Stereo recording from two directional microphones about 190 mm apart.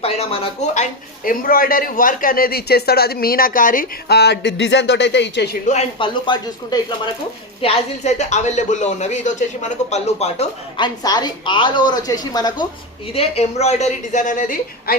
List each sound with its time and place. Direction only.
0.0 s speech: 30° left (ahead or behind); by 5.5 s 65° left (ahead or behind)
5.6 s speech: 30° left (ahead or behind)
10.8 s speech: 20° left (ahead or behind)
13.1 s speech: 35° left (ahead or behind)